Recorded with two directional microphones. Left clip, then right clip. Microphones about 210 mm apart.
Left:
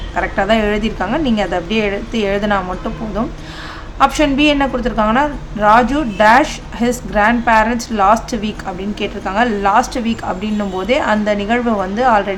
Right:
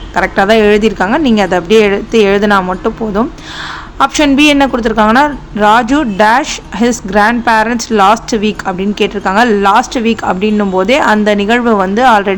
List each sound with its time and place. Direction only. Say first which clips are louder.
0.2 s a woman's voice: right 7 dB; 20° right (ahead or behind)